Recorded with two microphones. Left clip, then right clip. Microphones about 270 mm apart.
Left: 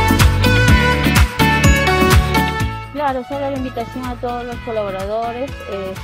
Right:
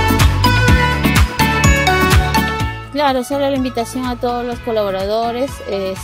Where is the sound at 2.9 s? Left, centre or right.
Right.